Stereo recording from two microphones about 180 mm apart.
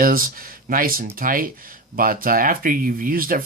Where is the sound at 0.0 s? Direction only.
50° right (ahead or behind).